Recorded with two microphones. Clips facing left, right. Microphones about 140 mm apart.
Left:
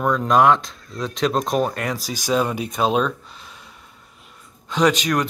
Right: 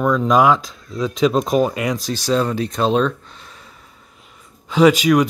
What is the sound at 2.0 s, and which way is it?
Speech, 10° left (ahead or behind).